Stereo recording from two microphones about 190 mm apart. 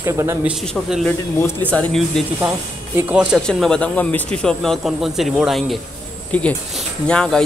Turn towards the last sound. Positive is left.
turn(degrees=5)  # may be behind; listen again after turning